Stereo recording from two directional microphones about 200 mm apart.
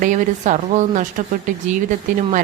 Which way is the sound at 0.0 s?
40° right (ahead or behind).